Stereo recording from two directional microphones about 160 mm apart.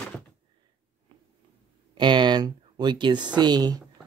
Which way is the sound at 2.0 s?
30° right (ahead or behind).